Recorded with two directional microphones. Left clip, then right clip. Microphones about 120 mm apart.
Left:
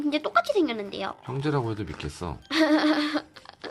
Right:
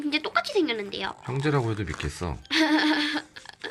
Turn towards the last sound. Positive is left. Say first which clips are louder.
# left 1 dB
turn(degrees=40)  # may be behind; listen again after turning